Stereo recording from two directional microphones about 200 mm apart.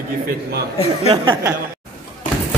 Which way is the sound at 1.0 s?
25° right (ahead or behind).